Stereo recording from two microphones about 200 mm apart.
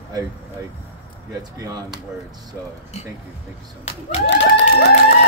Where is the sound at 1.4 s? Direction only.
20° right (ahead or behind).